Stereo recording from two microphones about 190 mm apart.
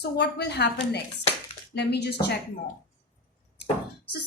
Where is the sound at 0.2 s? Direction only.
60° left (ahead or behind).